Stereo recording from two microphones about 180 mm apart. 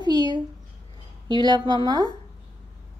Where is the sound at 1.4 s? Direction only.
25° right (ahead or behind).